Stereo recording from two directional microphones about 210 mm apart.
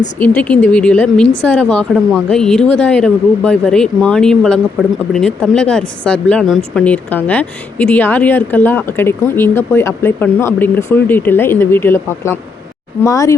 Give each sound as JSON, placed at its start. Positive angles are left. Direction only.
{"t": 0.2, "sound": "a woman's voice", "side_deg": 5}